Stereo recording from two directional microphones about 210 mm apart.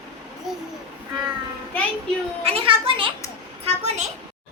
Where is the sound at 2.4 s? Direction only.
25° right (ahead or behind).